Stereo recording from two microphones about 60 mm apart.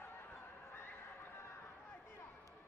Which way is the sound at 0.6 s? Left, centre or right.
Left.